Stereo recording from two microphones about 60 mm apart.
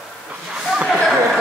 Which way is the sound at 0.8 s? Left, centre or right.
Centre.